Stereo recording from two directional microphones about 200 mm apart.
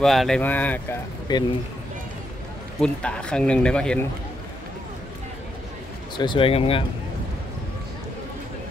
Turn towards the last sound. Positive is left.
turn(degrees=30)  # may be behind; listen again after turning